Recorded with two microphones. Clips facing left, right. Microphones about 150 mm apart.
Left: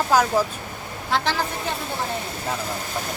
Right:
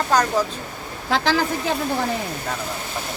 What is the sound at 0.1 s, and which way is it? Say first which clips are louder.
Speech: even; 5° left (ahead or behind).